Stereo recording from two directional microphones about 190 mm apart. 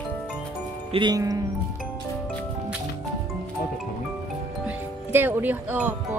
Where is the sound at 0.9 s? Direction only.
25° right (ahead or behind).